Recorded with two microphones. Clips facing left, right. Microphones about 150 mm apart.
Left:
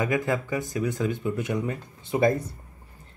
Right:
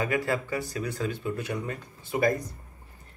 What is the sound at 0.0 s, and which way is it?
Speech, 15° left (ahead or behind).